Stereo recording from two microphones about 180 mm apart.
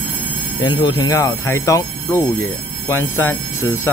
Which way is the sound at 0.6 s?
25° left (ahead or behind).